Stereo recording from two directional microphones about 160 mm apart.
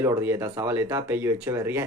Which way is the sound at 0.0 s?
15° right (ahead or behind).